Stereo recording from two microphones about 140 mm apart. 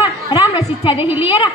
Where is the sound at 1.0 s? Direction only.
15° right (ahead or behind).